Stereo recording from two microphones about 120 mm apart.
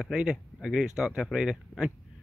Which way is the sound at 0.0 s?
5° right (ahead or behind).